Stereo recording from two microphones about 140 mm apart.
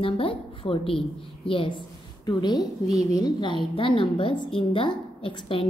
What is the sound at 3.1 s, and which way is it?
A woman's voice, 30° left (ahead or behind).